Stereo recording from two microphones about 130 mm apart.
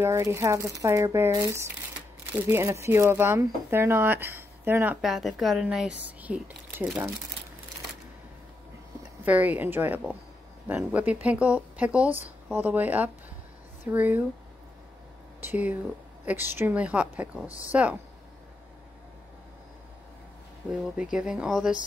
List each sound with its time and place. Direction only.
0.0 s speech: 20° right (ahead or behind)
5.0 s speech: centre (ahead or behind)
9.2 s speech: 10° right (ahead or behind)
15.4 s speech: 15° right (ahead or behind)
20.6 s speech: 10° right (ahead or behind)